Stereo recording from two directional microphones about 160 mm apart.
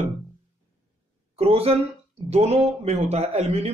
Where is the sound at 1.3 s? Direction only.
40° right (ahead or behind).